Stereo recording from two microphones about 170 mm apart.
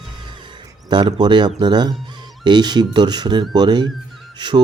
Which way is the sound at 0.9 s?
25° right (ahead or behind).